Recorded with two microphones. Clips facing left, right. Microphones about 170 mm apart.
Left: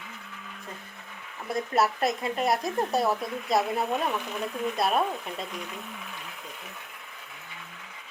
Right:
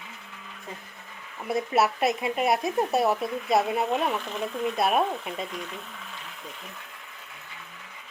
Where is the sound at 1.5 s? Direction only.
5° right (ahead or behind).